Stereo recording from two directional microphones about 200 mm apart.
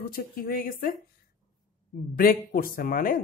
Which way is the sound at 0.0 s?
45° left (ahead or behind).